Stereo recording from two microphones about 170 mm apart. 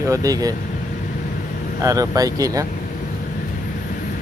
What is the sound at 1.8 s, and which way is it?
Speech, 20° right (ahead or behind).